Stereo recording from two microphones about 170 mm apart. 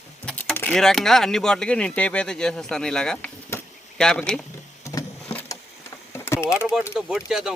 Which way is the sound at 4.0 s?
5° left (ahead or behind).